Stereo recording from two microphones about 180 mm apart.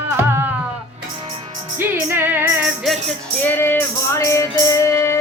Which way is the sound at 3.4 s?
10° left (ahead or behind).